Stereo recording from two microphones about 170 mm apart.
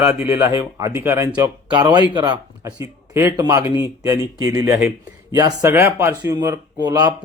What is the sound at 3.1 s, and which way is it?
Speech, 15° right (ahead or behind).